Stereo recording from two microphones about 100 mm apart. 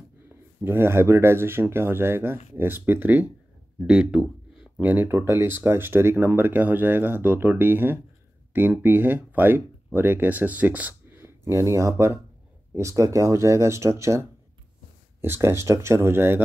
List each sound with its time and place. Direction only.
0.7 s speech: 25° right (ahead or behind)
3.8 s a sound: 10° right (ahead or behind)
4.8 s speech: 20° right (ahead or behind)
15.2 s speech: 25° right (ahead or behind)